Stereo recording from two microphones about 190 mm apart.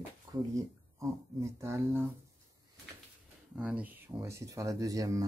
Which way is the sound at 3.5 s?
5° right (ahead or behind).